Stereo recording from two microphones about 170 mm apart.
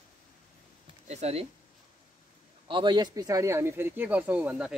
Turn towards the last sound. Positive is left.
turn(degrees=-5)  # may be behind; listen again after turning